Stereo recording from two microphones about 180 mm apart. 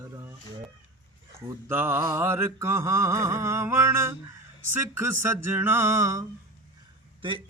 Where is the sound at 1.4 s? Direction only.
15° right (ahead or behind).